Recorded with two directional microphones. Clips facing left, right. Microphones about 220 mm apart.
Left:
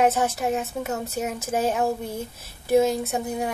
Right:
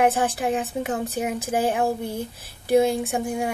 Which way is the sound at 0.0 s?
15° right (ahead or behind).